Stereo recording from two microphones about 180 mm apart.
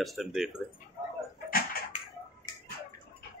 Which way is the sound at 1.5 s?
55° left (ahead or behind).